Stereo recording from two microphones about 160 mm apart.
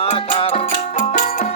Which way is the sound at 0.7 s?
50° left (ahead or behind).